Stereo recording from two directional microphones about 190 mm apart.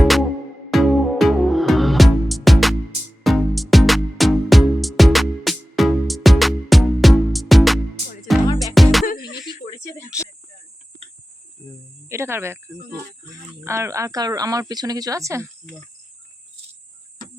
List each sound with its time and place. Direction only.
0.0 s music: centre (ahead or behind)
9.6 s a sound: 40° left (ahead or behind)
10.1 s music: 5° right (ahead or behind)
12.0 s speech: 15° right (ahead or behind)